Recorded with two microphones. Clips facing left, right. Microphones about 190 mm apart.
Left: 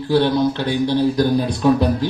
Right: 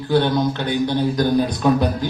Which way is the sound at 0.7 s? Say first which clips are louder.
Left 2 dB; 30° left (ahead or behind).